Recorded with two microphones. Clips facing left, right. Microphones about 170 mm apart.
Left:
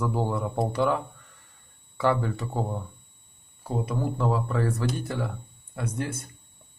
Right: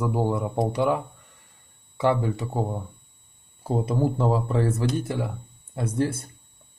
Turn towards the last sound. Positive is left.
turn(degrees=-30)  # may be behind; listen again after turning